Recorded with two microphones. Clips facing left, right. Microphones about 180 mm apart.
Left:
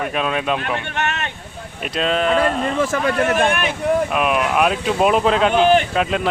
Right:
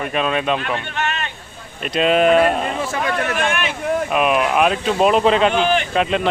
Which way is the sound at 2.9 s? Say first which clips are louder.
Left 3 dB; 40° left (ahead or behind).